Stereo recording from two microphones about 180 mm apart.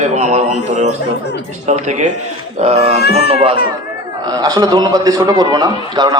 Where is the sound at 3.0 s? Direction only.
65° left (ahead or behind).